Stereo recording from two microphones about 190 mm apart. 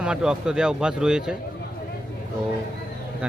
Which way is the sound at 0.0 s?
5° right (ahead or behind).